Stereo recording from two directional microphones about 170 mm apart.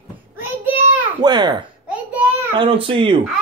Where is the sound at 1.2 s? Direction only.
25° right (ahead or behind).